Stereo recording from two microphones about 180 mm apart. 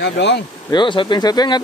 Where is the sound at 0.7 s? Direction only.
25° left (ahead or behind).